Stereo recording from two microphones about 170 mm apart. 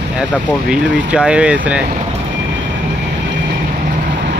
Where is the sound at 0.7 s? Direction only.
5° right (ahead or behind).